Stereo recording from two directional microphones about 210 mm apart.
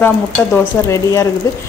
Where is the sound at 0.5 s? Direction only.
15° left (ahead or behind).